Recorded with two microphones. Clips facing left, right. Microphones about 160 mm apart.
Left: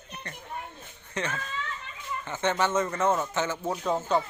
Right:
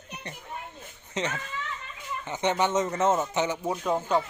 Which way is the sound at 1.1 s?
20° right (ahead or behind).